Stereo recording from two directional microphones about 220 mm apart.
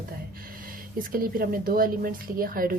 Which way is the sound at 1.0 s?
40° right (ahead or behind).